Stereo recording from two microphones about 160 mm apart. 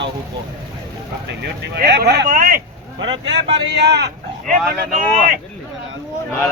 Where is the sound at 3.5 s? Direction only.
90° right.